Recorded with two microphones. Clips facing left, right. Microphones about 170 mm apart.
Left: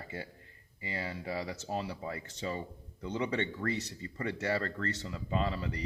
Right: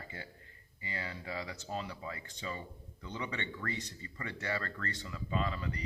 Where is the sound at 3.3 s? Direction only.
35° left (ahead or behind).